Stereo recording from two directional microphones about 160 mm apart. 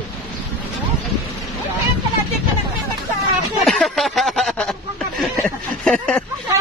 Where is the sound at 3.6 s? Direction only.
Centre (ahead or behind).